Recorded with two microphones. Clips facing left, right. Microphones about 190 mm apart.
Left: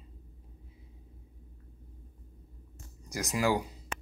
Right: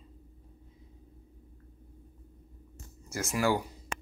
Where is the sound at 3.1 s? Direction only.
20° left (ahead or behind).